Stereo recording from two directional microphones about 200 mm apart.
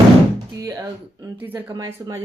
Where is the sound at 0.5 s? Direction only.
15° right (ahead or behind).